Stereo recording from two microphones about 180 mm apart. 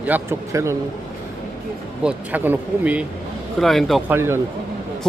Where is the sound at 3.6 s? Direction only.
Centre (ahead or behind).